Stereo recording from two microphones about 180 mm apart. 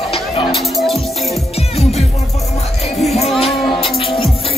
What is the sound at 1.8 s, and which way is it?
Music, 35° left (ahead or behind).